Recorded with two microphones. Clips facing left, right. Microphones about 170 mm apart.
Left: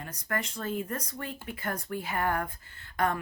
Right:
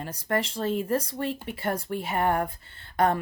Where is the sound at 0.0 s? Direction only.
30° right (ahead or behind).